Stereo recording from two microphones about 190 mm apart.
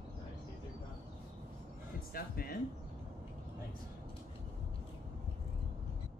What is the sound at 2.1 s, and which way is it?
Speech, 50° left (ahead or behind).